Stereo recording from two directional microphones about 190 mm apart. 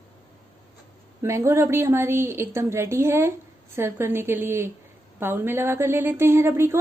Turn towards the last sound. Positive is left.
turn(degrees=-15)  # may be behind; listen again after turning